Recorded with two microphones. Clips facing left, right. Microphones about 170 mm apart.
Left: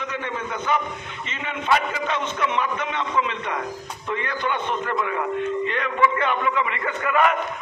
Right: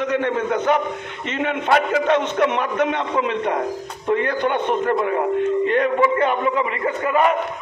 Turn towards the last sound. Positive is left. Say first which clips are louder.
# right 3 dB
turn(degrees=-35)  # may be behind; listen again after turning